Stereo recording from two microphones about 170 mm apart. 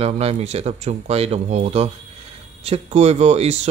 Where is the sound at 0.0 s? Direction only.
35° right (ahead or behind).